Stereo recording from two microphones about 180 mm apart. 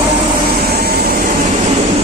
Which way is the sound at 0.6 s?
60° right (ahead or behind).